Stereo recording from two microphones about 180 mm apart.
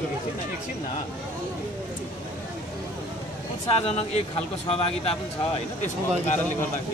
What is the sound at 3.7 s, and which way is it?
Speech, 35° left (ahead or behind).